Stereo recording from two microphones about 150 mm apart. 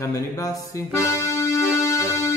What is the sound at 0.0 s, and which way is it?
Speech, 20° left (ahead or behind).